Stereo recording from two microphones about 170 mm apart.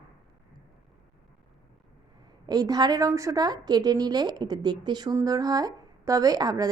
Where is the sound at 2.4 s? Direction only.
25° right (ahead or behind).